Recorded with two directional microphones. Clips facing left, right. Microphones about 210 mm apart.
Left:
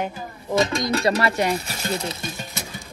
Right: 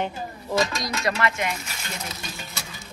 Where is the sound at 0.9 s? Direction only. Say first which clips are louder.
Left 5 dB; 35° left (ahead or behind).